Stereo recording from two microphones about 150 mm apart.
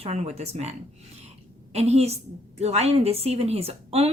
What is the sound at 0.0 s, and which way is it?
Speech, 45° right (ahead or behind).